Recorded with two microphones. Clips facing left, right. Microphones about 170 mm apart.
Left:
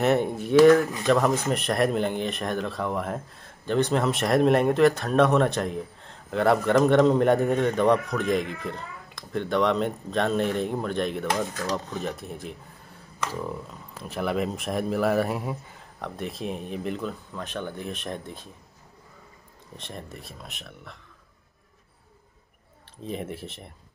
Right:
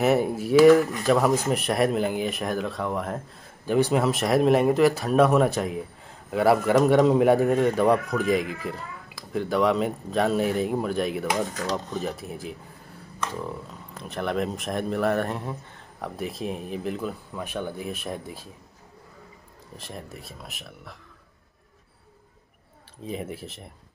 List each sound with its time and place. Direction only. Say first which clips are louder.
0.0 s speech: right 1 dB; 5° right (ahead or behind)
19.8 s speech: even; centre (ahead or behind)
23.0 s speech: even; centre (ahead or behind)